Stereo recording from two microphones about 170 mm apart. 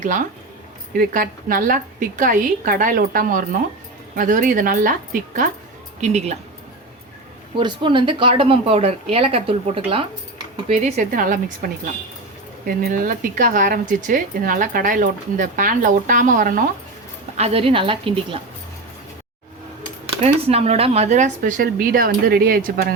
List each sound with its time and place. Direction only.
0.0 s speech: 50° right (ahead or behind)
7.6 s speech: 30° right (ahead or behind); by 16.6 s 50° right (ahead or behind)
17.3 s speech: 35° right (ahead or behind)
20.2 s speech: 40° right (ahead or behind); by 23.0 s 60° right (ahead or behind)